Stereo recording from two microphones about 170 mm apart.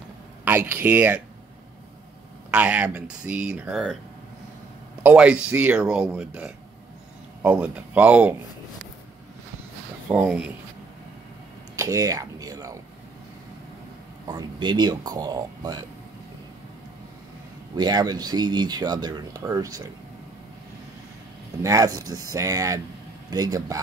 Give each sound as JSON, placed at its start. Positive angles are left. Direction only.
{"t": 0.5, "sound": "speech", "side_deg": -10}
{"t": 2.5, "sound": "speech", "side_deg": -5}
{"t": 5.0, "sound": "speech", "side_deg": -5}
{"t": 10.0, "sound": "speech", "side_deg": -5}
{"t": 11.7, "sound": "a sound", "side_deg": -20}
{"t": 14.2, "sound": "speech", "side_deg": -25}
{"t": 17.7, "sound": "speech", "side_deg": -25}
{"t": 21.6, "sound": "speech", "side_deg": -20}